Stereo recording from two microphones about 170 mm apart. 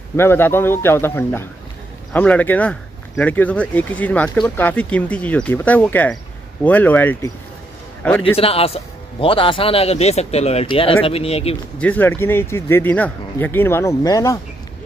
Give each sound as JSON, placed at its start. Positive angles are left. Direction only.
{"t": 0.1, "sound": "speech", "side_deg": 15}
{"t": 8.4, "sound": "a man's voice", "side_deg": 35}
{"t": 11.8, "sound": "speech", "side_deg": 10}